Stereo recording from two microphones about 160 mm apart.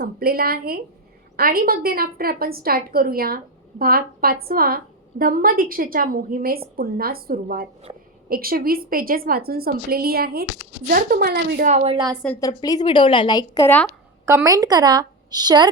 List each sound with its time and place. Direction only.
0.0 s a woman's voice: 70° right (ahead or behind)
11.6 s a woman's voice: 45° right (ahead or behind)
12.4 s a woman's voice: 25° left (ahead or behind)
14.3 s a woman's voice: 20° right (ahead or behind)